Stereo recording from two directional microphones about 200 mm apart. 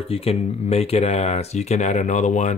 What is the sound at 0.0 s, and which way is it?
Speech, 30° left (ahead or behind).